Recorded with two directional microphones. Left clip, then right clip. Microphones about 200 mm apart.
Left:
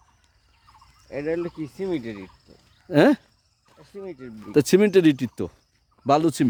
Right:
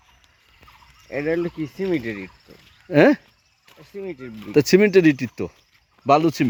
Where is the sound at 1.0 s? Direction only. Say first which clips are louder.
Right 4 dB; 45° right (ahead or behind).